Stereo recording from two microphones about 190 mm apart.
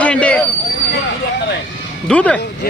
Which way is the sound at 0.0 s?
5° left (ahead or behind).